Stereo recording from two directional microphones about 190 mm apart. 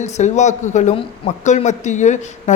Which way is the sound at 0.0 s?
40° left (ahead or behind).